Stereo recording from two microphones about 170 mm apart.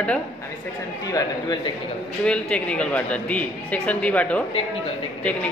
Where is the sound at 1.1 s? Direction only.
25° left (ahead or behind).